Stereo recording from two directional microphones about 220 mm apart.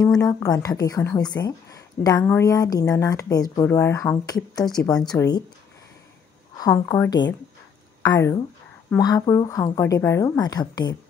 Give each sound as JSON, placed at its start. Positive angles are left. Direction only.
{"t": 0.0, "sound": "a woman's voice", "side_deg": 15}
{"t": 6.5, "sound": "a woman's voice", "side_deg": 15}